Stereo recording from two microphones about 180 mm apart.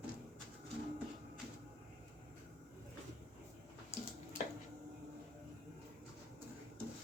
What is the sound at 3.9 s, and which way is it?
Bathtub, 35° left (ahead or behind).